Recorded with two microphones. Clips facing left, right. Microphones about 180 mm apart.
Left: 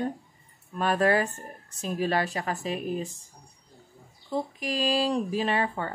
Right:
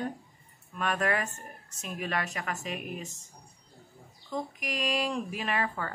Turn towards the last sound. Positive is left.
turn(degrees=30)  # may be behind; listen again after turning